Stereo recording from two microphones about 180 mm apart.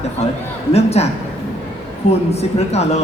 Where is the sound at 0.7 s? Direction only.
35° left (ahead or behind).